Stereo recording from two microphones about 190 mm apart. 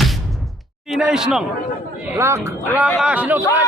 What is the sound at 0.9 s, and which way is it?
Speech, 5° right (ahead or behind).